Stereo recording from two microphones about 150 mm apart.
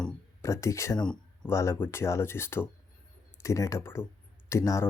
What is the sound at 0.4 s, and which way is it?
Speech, 20° left (ahead or behind).